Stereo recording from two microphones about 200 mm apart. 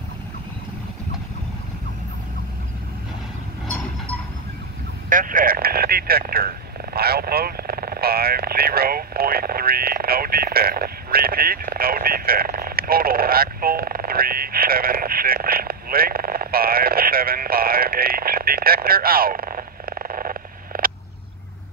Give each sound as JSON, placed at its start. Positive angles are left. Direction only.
{"t": 5.1, "sound": "speech", "side_deg": -45}